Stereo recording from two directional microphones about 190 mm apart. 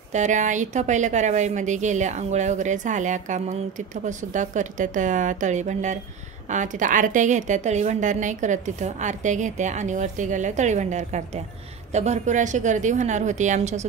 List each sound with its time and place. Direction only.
0.1 s a woman's voice: 40° right (ahead or behind)